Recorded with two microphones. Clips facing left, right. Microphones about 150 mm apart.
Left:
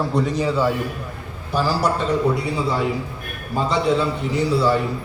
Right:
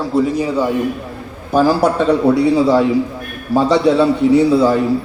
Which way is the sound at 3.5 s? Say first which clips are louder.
Right 7 dB; 80° right.